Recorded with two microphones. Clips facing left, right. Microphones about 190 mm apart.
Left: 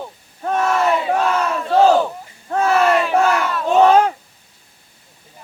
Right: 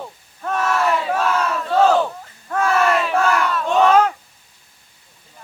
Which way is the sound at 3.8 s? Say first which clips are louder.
Left 2 dB; 30° left (ahead or behind).